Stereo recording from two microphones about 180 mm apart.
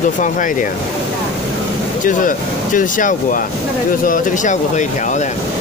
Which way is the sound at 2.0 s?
45° left (ahead or behind).